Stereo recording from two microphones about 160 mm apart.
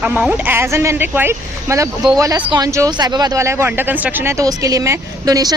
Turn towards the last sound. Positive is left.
turn(degrees=-25)  # may be behind; listen again after turning